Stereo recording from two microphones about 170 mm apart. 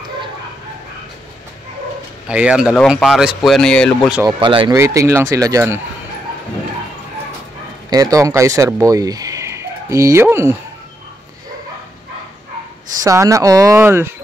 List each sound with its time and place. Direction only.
2.2 s speech: 5° right (ahead or behind)
4.3 s speech: 30° right (ahead or behind)
4.7 s speech: 15° right (ahead or behind)
7.9 s speech: 20° right (ahead or behind)
13.0 s speech: 15° right (ahead or behind)